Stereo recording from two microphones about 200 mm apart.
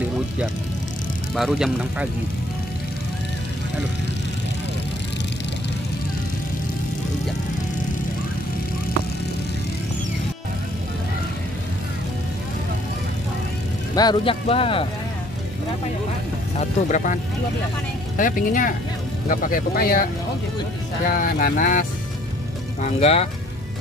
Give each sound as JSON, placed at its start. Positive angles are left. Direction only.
{"t": 1.3, "sound": "speech", "side_deg": 0}
{"t": 13.9, "sound": "speech", "side_deg": 25}
{"t": 16.5, "sound": "speech", "side_deg": 40}
{"t": 21.1, "sound": "speech", "side_deg": 45}
{"t": 22.8, "sound": "speech", "side_deg": 35}